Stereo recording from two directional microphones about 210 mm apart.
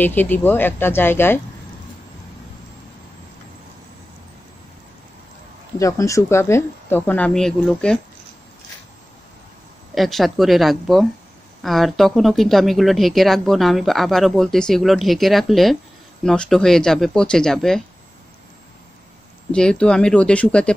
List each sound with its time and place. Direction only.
0.0 s speech: 10° left (ahead or behind)
5.8 s speech: 15° left (ahead or behind)
9.9 s speech: centre (ahead or behind)
19.5 s speech: 5° left (ahead or behind)